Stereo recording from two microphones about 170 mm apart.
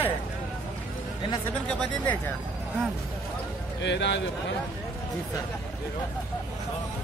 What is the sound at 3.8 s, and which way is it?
Speech, 90° left.